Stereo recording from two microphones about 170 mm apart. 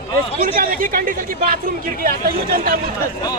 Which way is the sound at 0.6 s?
55° right (ahead or behind).